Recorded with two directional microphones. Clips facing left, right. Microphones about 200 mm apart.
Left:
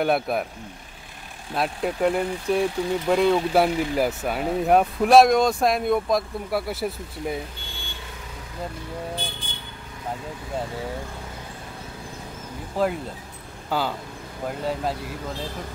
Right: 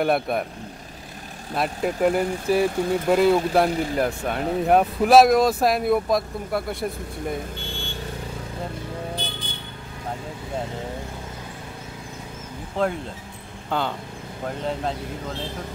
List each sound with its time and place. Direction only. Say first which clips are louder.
0.0 s speech: right 1 dB; centre (ahead or behind)
1.5 s speech: right 1 dB; centre (ahead or behind)
12.8 s speech: even; 5° left (ahead or behind)